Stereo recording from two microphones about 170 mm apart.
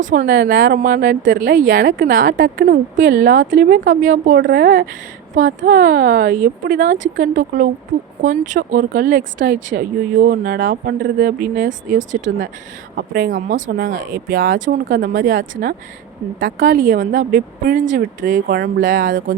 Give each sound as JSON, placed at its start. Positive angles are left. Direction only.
{"t": 0.0, "sound": "speech", "side_deg": -55}
{"t": 13.0, "sound": "speech", "side_deg": -65}